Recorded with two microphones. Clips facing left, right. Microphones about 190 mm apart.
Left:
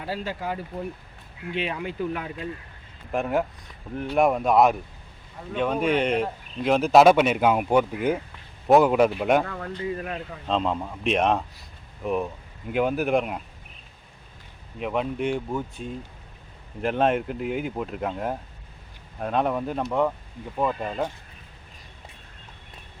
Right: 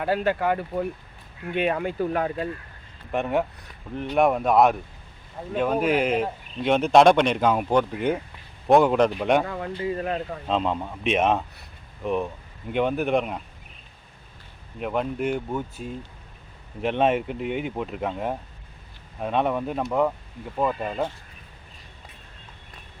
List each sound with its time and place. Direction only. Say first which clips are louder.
0.0 s speech: right 7 dB; 60° right (ahead or behind)
3.1 s speech: even; centre (ahead or behind)
9.4 s speech: right 2 dB; 15° right (ahead or behind)
9.9 s speech: right 4 dB; 30° right (ahead or behind)
10.4 s speech: left 2 dB; centre (ahead or behind)
14.8 s speech: even; centre (ahead or behind)